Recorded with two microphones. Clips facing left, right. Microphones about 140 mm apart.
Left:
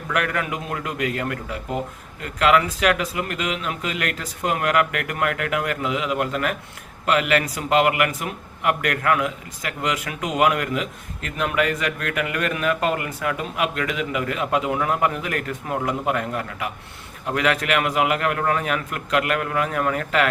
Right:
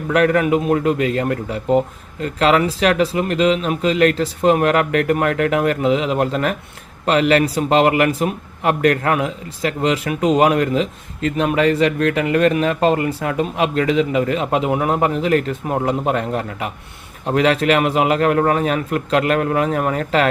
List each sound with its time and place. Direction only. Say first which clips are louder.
0.1 s speech: right 10 dB; 30° right (ahead or behind)